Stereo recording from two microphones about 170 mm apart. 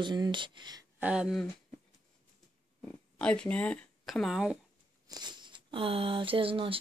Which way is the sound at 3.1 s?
5° left (ahead or behind).